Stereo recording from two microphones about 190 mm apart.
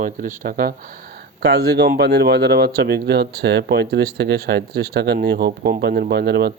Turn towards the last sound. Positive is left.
turn(degrees=-60)  # may be behind; listen again after turning